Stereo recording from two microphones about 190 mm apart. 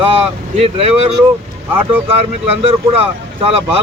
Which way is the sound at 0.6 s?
30° right (ahead or behind).